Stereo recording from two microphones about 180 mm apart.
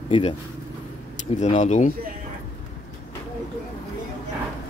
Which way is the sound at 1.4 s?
40° left (ahead or behind).